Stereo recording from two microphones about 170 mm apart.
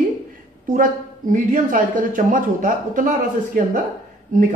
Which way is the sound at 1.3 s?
50° right (ahead or behind).